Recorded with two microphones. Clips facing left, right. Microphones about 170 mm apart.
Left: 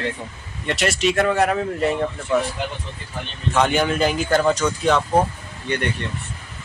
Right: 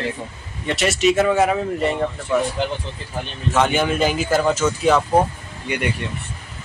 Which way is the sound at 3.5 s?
Centre (ahead or behind).